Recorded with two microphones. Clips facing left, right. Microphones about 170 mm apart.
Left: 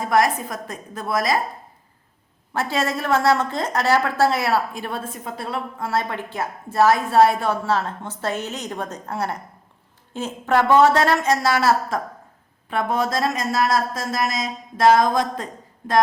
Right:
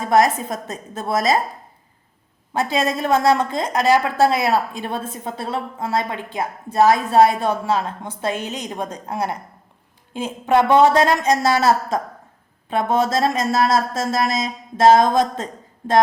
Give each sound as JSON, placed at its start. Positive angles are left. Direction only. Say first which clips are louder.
{"t": 0.0, "sound": "speech", "louder": "right 3 dB", "side_deg": -25}
{"t": 2.5, "sound": "a woman's voice", "louder": "right 3 dB", "side_deg": -15}